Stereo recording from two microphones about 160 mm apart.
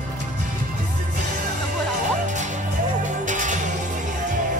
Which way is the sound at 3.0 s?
50° right (ahead or behind).